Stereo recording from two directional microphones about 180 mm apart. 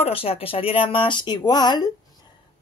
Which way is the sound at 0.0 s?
35° left (ahead or behind).